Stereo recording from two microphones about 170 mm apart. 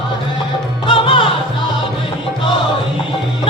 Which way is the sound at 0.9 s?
30° left (ahead or behind).